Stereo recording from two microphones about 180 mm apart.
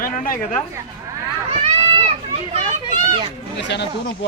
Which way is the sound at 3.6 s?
75° left (ahead or behind).